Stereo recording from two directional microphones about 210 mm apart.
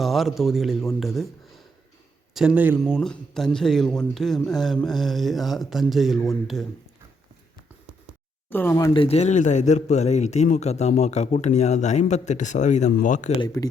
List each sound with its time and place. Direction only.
0.0 s speech: centre (ahead or behind)
8.4 s speech: 10° left (ahead or behind); by 13.3 s 35° left (ahead or behind)
13.4 s speech: 15° left (ahead or behind)